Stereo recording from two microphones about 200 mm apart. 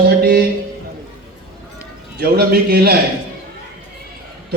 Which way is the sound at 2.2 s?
50° right (ahead or behind).